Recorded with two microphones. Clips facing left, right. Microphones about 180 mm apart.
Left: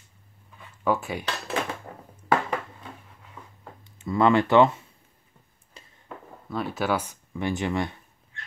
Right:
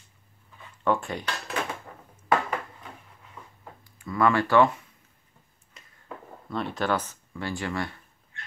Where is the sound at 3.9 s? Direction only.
25° left (ahead or behind).